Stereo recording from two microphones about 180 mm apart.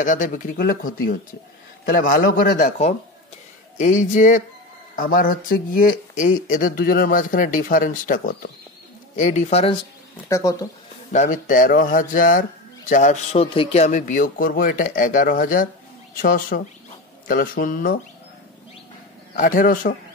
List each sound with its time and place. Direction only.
0.0 s a man's voice: 45° left (ahead or behind)
3.7 s a man's voice: 45° left (ahead or behind)
10.2 s speech: 15° left (ahead or behind)
11.1 s a man's voice: 45° left (ahead or behind)
19.3 s a man's voice: 50° left (ahead or behind)